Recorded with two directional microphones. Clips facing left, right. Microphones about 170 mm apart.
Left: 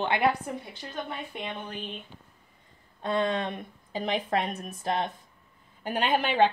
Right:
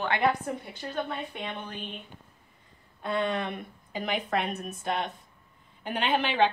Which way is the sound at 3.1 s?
25° left (ahead or behind).